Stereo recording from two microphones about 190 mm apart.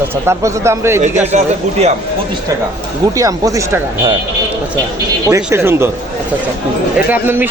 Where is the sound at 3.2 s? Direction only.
20° right (ahead or behind).